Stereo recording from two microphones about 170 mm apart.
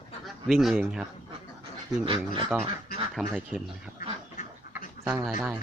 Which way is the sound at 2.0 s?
30° right (ahead or behind).